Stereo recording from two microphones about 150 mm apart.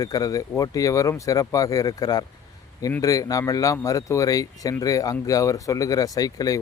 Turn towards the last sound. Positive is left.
turn(degrees=25)  # may be behind; listen again after turning